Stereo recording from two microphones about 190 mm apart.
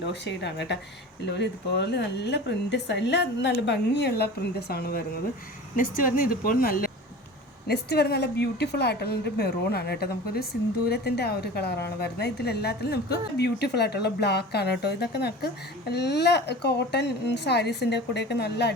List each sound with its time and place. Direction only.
0.1 s a woman's voice: 65° left (ahead or behind)